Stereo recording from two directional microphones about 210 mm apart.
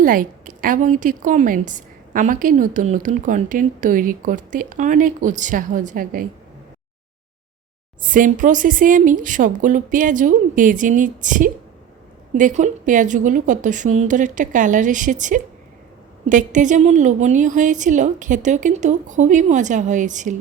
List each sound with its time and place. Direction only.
0.0 s a woman's voice: 40° right (ahead or behind)
8.0 s a woman's voice: 40° right (ahead or behind)